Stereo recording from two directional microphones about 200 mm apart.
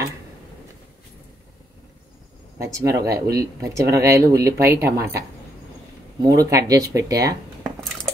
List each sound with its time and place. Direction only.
2.6 s speech: 15° right (ahead or behind)
6.2 s speech: 15° right (ahead or behind)